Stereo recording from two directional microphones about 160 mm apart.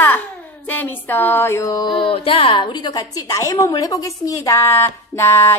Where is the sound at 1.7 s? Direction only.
30° left (ahead or behind).